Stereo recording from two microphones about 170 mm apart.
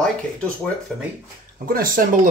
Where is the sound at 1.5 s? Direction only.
60° right (ahead or behind).